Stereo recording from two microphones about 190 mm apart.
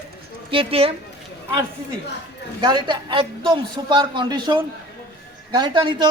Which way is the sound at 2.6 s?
25° right (ahead or behind).